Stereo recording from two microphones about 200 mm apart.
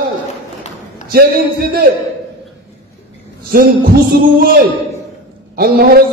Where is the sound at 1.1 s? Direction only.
50° right (ahead or behind).